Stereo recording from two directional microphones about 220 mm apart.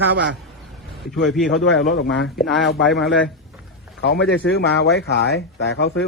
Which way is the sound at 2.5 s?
Centre (ahead or behind).